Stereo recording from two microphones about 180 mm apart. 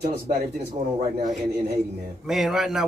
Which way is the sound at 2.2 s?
Centre (ahead or behind).